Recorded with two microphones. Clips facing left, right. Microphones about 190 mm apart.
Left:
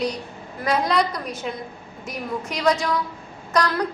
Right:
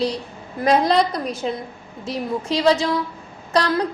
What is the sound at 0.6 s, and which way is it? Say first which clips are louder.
A woman's voice: right 5 dB; 35° right (ahead or behind).